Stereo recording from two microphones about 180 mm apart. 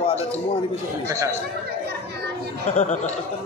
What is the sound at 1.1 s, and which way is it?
Chatter, 15° right (ahead or behind).